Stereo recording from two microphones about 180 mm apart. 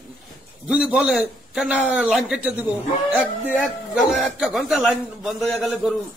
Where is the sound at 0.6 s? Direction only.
5° right (ahead or behind).